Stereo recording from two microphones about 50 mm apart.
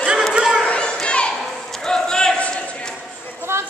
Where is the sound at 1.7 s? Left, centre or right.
Centre.